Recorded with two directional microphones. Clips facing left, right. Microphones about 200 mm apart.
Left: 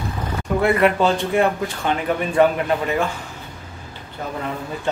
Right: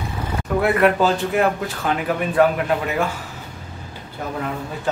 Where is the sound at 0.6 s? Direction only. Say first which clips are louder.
Even; centre (ahead or behind).